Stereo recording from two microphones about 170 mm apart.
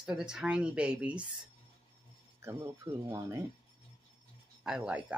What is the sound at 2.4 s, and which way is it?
Speech, 15° right (ahead or behind).